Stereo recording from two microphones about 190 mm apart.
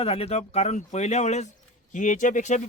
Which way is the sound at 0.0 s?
30° left (ahead or behind).